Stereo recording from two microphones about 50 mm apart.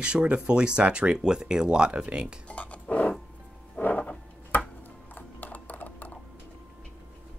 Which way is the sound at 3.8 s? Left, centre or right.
Left.